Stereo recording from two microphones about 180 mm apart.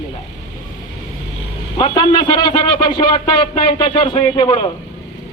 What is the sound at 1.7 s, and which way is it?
Speech, 25° left (ahead or behind).